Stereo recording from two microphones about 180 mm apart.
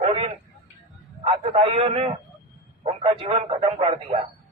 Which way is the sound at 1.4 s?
30° right (ahead or behind).